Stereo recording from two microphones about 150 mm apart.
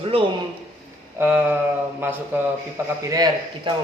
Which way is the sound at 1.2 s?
10° right (ahead or behind).